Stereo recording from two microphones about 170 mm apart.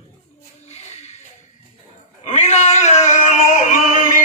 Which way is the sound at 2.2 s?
45° left (ahead or behind).